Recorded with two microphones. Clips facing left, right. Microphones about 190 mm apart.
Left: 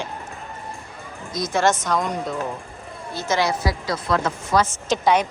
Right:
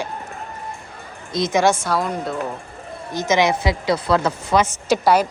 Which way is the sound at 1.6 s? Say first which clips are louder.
Right 1 dB; 10° right (ahead or behind).